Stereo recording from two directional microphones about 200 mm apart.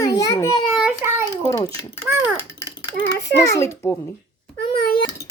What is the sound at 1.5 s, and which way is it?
Speech, 15° left (ahead or behind).